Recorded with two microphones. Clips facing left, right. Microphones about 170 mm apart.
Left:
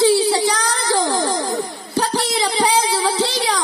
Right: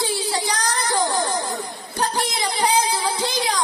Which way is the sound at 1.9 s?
85° left.